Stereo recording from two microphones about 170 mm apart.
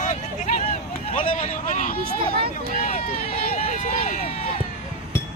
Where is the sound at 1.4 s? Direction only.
50° left (ahead or behind).